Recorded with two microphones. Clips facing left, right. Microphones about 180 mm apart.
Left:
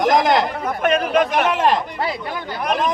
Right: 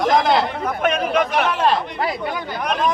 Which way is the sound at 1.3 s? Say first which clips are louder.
Left 1 dB; 15° left (ahead or behind).